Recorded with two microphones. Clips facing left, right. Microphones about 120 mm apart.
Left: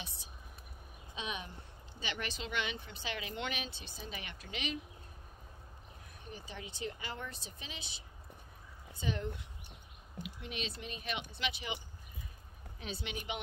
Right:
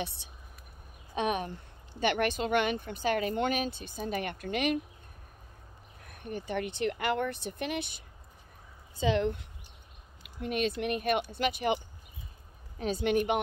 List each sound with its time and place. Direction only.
0.2 s speech: 65° right (ahead or behind)
1.1 s speech: 55° right (ahead or behind)
6.0 s speech: 60° right (ahead or behind)
9.0 s speech: 90° right
10.2 s speech: 50° right (ahead or behind)